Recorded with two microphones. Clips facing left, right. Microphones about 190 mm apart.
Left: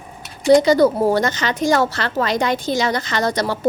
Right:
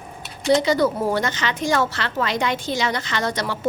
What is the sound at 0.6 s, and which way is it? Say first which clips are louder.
A woman's voice: left 5 dB; 40° left (ahead or behind).